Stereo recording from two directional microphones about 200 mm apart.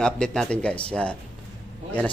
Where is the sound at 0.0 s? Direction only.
5° left (ahead or behind).